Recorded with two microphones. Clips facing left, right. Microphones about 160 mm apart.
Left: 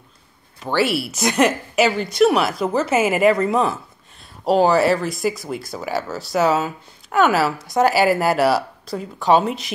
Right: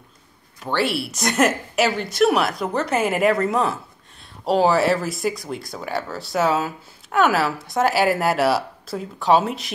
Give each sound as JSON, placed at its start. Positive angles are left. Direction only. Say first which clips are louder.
{"t": 0.6, "sound": "speech", "louder": "left 3 dB", "side_deg": 5}